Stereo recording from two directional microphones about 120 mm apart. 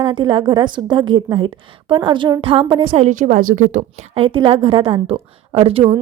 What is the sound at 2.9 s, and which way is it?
Speech, 80° right.